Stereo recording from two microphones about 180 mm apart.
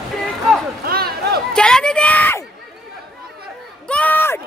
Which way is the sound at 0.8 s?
60° right (ahead or behind).